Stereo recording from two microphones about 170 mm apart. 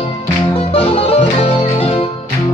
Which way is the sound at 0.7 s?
35° left (ahead or behind).